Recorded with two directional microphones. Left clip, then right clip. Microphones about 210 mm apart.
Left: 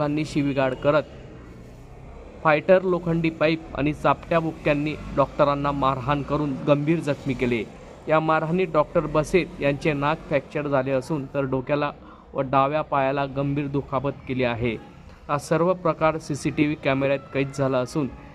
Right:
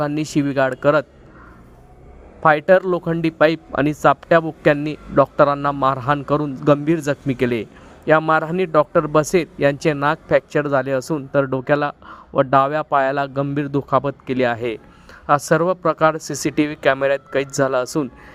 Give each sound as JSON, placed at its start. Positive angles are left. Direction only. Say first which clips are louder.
{"t": 0.0, "sound": "a man's voice", "louder": "right 4 dB", "side_deg": -35}
{"t": 2.4, "sound": "a man's voice", "louder": "right 5 dB", "side_deg": -40}